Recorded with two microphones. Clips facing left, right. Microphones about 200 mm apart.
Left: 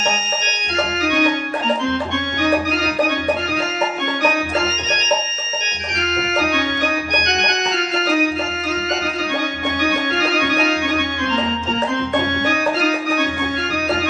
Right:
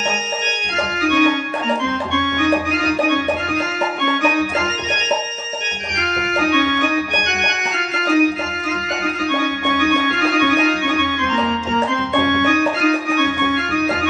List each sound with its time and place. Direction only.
1.0 s organ: 40° left (ahead or behind)
6.5 s organ: 35° left (ahead or behind)
9.8 s music: 35° left (ahead or behind)
11.9 s organ: 35° left (ahead or behind)